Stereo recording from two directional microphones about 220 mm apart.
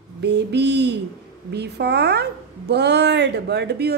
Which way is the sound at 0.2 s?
50° right (ahead or behind).